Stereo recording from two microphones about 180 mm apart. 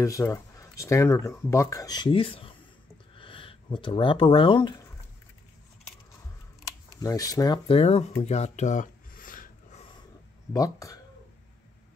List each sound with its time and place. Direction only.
0.0 s speech: 15° left (ahead or behind)
7.0 s speech: 20° left (ahead or behind)
8.2 s filing: 40° left (ahead or behind)
10.5 s speech: 20° left (ahead or behind)